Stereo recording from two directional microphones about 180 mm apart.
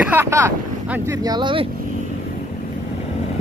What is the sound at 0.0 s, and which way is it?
Speech, 10° right (ahead or behind).